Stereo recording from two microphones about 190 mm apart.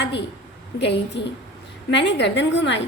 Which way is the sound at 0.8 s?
65° left (ahead or behind).